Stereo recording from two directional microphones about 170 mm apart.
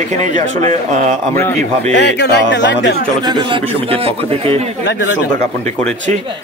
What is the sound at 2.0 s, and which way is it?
Speech, 85° left.